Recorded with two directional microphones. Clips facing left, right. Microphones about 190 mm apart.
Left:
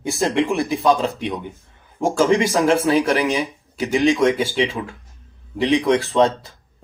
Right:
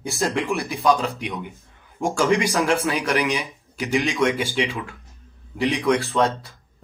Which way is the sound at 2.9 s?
30° left (ahead or behind).